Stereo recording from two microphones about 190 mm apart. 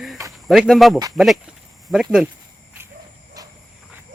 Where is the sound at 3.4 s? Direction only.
20° right (ahead or behind).